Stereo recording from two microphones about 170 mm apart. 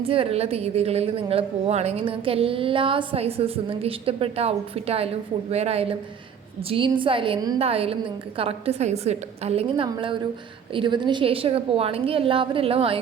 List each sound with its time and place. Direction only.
0.0 s a woman's voice: 35° right (ahead or behind)